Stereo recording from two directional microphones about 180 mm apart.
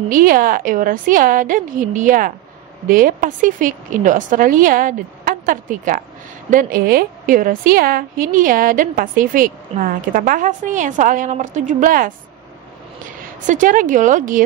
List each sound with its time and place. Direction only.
0.1 s a woman's voice: 50° right (ahead or behind)
13.5 s a woman's voice: 45° right (ahead or behind)